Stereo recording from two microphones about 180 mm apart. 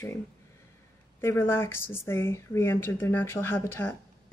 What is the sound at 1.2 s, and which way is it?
Speech, 15° left (ahead or behind).